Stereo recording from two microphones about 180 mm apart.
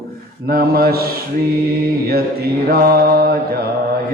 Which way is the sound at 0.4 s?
60° right (ahead or behind).